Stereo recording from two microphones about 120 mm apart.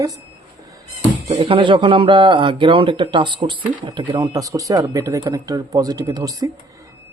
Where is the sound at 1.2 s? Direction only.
55° right (ahead or behind); by 6.5 s 25° right (ahead or behind).